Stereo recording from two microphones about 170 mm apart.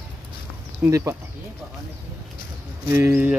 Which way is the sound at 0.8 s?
15° right (ahead or behind).